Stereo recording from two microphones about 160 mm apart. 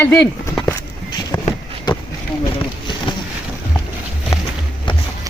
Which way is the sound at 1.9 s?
25° left (ahead or behind).